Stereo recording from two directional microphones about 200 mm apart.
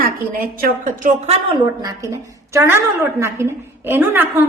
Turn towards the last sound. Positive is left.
turn(degrees=-10)  # may be behind; listen again after turning